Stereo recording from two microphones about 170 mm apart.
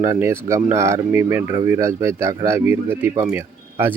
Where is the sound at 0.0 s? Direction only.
15° right (ahead or behind).